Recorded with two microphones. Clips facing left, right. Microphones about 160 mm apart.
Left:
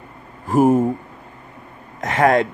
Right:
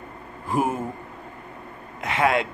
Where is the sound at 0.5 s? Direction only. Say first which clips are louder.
Left 10 dB; 40° left (ahead or behind).